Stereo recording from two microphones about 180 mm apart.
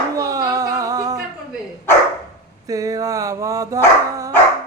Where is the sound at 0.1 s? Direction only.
20° right (ahead or behind).